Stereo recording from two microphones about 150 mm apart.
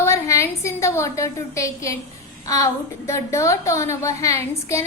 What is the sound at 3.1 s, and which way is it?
A woman's voice, 20° left (ahead or behind).